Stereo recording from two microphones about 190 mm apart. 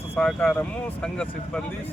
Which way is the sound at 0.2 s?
5° left (ahead or behind).